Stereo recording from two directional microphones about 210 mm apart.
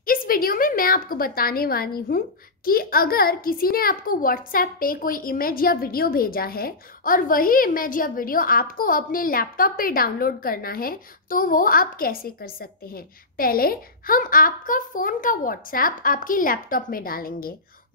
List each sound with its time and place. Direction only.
0.0 s a woman's voice: 45° left (ahead or behind)